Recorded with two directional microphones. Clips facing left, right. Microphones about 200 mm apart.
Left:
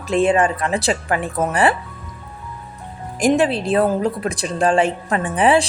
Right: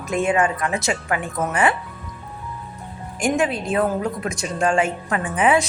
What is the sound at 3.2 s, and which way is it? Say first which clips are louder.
A woman's voice: left 5 dB; 35° left (ahead or behind).